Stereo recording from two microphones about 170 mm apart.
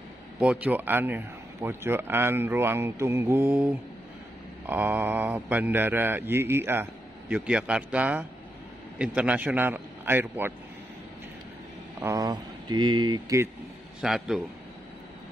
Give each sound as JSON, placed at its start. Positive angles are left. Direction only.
{"t": 0.4, "sound": "a man's voice", "side_deg": -5}
{"t": 12.0, "sound": "speech", "side_deg": -20}
{"t": 14.0, "sound": "a man's voice", "side_deg": 0}